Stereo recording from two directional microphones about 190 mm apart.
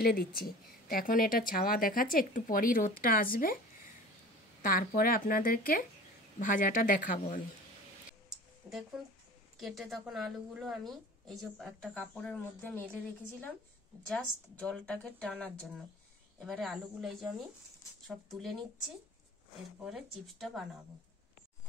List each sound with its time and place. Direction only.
0.0 s speech: 55° left (ahead or behind)
4.6 s speech: 50° left (ahead or behind)
8.3 s a sound: centre (ahead or behind)
9.6 s a woman's voice: centre (ahead or behind)